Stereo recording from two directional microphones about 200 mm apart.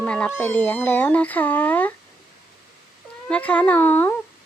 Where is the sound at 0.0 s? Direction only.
5° left (ahead or behind).